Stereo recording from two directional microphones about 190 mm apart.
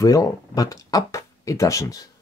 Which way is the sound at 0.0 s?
20° left (ahead or behind).